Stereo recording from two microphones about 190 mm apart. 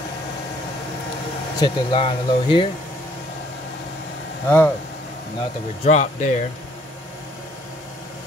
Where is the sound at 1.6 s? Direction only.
25° left (ahead or behind).